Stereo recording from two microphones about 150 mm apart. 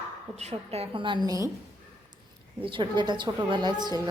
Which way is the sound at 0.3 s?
40° right (ahead or behind).